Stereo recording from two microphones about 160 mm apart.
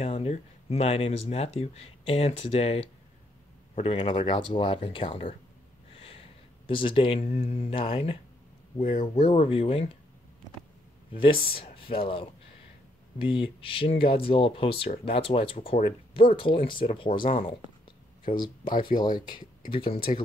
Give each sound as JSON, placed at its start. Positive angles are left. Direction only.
{"t": 0.0, "sound": "speech", "side_deg": 40}
{"t": 5.9, "sound": "snort", "side_deg": 35}
{"t": 6.7, "sound": "speech", "side_deg": 30}
{"t": 11.1, "sound": "speech", "side_deg": 35}
{"t": 18.9, "sound": "speech", "side_deg": 25}